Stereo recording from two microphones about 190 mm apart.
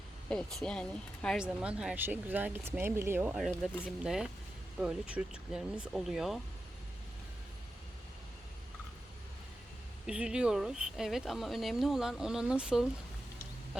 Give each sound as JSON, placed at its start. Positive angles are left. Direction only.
{"t": 0.3, "sound": "speech", "side_deg": 5}
{"t": 10.1, "sound": "speech", "side_deg": -5}